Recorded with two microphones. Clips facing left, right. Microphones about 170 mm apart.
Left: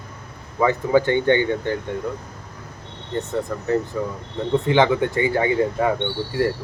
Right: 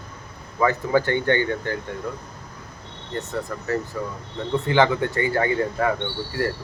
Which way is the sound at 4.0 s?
15° left (ahead or behind).